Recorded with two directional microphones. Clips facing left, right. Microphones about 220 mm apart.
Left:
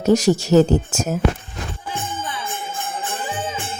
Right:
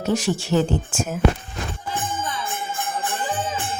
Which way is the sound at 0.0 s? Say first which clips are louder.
Left 7 dB; 40° left (ahead or behind).